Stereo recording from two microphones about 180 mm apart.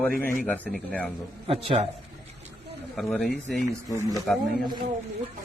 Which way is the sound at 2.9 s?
5° left (ahead or behind).